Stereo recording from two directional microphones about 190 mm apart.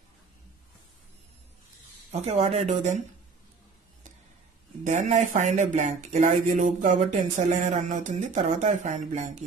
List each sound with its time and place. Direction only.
2.1 s speech: 30° right (ahead or behind)
4.8 s speech: 40° right (ahead or behind)